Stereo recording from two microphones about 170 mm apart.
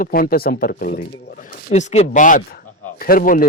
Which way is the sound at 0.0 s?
60° left (ahead or behind).